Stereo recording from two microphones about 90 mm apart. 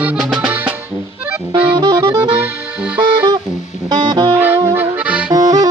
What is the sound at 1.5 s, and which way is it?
Music, 55° right (ahead or behind).